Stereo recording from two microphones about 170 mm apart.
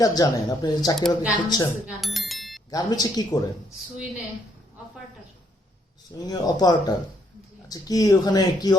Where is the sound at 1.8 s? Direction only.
Centre (ahead or behind).